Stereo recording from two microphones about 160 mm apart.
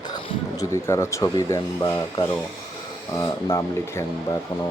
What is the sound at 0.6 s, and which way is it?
Speech, 20° left (ahead or behind).